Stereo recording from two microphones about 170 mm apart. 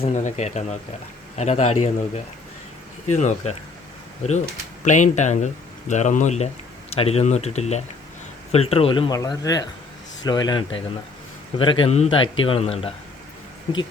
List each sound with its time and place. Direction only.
0.0 s a man's voice: 45° left (ahead or behind)